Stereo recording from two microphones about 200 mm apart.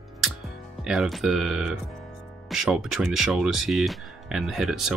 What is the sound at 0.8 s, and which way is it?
Speech, centre (ahead or behind).